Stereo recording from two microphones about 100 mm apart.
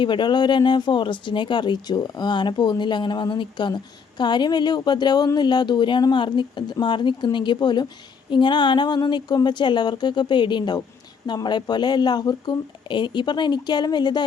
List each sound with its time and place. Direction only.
0.0 s speech: 50° left (ahead or behind)